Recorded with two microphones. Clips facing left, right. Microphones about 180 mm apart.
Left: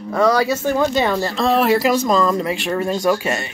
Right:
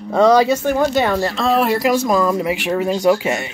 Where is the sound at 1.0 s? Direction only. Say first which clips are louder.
Right 1 dB; centre (ahead or behind).